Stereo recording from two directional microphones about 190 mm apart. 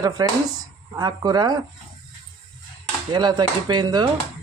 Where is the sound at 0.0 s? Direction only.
20° right (ahead or behind).